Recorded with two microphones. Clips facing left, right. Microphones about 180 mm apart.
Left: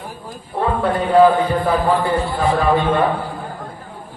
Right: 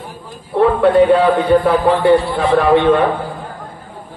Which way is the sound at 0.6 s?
65° right (ahead or behind).